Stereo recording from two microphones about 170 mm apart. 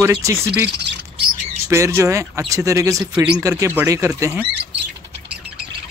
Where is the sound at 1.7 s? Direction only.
15° right (ahead or behind).